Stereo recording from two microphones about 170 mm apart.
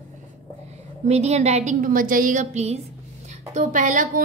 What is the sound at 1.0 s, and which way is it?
A woman's voice, 40° right (ahead or behind).